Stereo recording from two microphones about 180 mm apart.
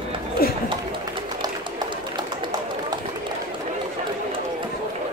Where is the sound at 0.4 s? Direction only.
55° left (ahead or behind).